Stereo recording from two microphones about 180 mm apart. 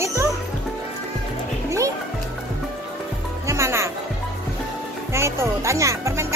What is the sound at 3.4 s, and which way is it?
Music, 15° right (ahead or behind).